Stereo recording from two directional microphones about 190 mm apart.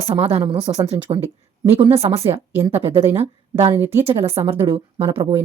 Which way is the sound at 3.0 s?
15° right (ahead or behind).